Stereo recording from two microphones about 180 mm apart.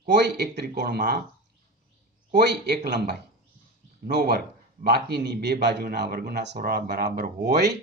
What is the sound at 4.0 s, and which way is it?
A man's voice, 60° right (ahead or behind).